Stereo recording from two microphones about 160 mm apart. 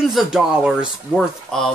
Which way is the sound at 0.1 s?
Centre (ahead or behind).